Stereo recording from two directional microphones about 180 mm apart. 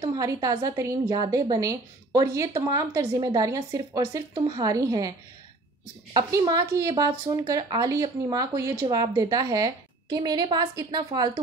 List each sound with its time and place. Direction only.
0.0 s speech: 20° right (ahead or behind)
6.1 s speech: 20° right (ahead or behind)